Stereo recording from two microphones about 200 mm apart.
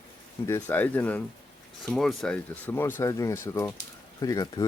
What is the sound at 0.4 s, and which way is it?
Speech, 10° left (ahead or behind).